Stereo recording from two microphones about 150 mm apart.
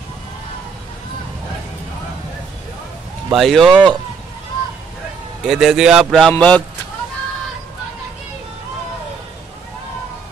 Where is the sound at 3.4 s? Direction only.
Centre (ahead or behind).